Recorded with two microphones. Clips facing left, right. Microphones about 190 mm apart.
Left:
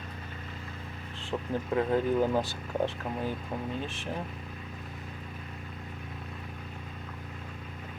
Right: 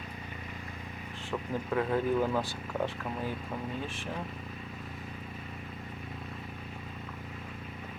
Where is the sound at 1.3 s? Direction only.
25° left (ahead or behind).